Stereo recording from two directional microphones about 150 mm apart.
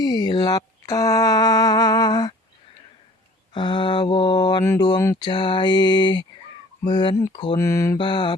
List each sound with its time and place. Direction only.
0.0 s a sound: 25° left (ahead or behind)
3.5 s mantra: 30° left (ahead or behind)
4.6 s speech: 15° left (ahead or behind)
4.9 s mantra: 25° left (ahead or behind)
6.8 s speech: 30° left (ahead or behind)
7.9 s mantra: 30° left (ahead or behind)